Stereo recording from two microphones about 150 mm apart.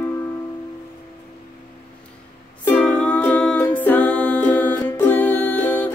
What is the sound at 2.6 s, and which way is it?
Music, 10° left (ahead or behind).